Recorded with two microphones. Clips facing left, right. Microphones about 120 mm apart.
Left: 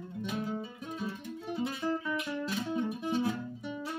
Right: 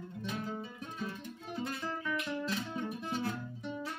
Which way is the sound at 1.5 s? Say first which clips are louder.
Left 5 dB; 10° left (ahead or behind).